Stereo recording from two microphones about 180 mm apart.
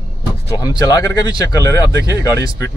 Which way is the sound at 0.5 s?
20° left (ahead or behind).